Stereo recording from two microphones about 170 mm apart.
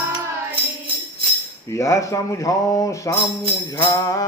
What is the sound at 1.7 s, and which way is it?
Speech, 20° left (ahead or behind).